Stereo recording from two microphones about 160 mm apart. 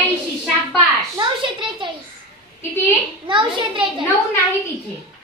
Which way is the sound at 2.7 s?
10° left (ahead or behind).